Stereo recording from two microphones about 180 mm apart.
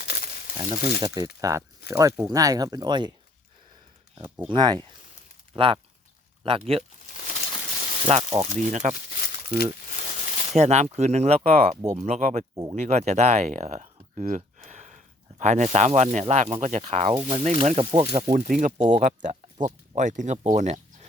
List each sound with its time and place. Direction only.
0.0 s crumpling: 65° left (ahead or behind)
1.0 s speech: 20° right (ahead or behind)
4.4 s speech: 25° right (ahead or behind)
7.1 s a sound: 45° left (ahead or behind)
8.0 s speech: 35° right (ahead or behind)
9.0 s a sound: 60° left (ahead or behind)
10.2 s a sound: 50° left (ahead or behind)
10.5 s speech: 40° right (ahead or behind)
18.9 s speech: 40° right (ahead or behind)